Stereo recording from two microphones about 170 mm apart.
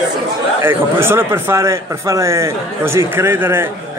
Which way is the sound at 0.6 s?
15° right (ahead or behind).